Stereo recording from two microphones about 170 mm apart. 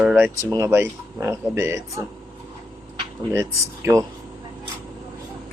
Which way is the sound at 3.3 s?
20° right (ahead or behind).